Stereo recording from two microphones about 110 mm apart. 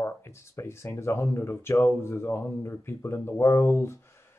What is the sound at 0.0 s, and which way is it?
Speech, 25° left (ahead or behind).